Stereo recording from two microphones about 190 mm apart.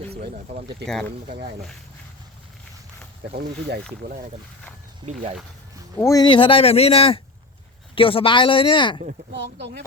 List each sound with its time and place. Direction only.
3.3 s speech: 55° right (ahead or behind)
4.0 s speech: 40° right (ahead or behind)
6.0 s speech: 20° left (ahead or behind)
9.3 s speech: 65° right (ahead or behind)